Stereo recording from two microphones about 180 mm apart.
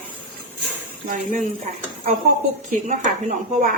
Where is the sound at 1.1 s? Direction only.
45° right (ahead or behind).